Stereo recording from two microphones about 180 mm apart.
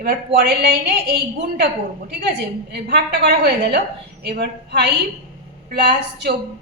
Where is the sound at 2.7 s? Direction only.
60° right (ahead or behind).